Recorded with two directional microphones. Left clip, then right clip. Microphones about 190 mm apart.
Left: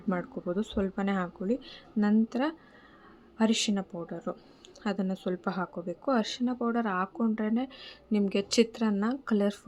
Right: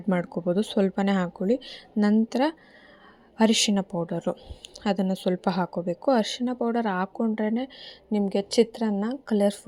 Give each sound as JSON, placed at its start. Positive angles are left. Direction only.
{"t": 0.1, "sound": "speech", "side_deg": -30}